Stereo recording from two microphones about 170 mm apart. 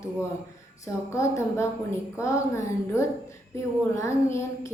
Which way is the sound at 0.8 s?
15° left (ahead or behind).